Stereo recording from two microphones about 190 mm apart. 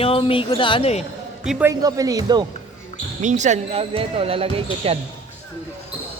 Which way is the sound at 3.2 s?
40° right (ahead or behind).